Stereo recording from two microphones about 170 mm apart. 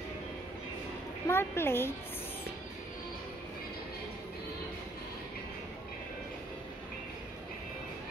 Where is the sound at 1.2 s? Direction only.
15° left (ahead or behind).